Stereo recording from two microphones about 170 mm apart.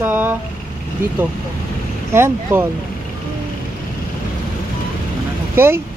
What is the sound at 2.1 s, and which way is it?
Speech, 15° right (ahead or behind).